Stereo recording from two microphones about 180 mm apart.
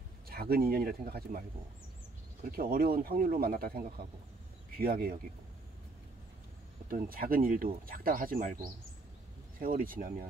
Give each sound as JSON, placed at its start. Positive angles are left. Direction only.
{"t": 0.3, "sound": "speech", "side_deg": -55}
{"t": 2.5, "sound": "speech", "side_deg": -55}
{"t": 6.9, "sound": "speech", "side_deg": -55}
{"t": 9.6, "sound": "speech", "side_deg": -50}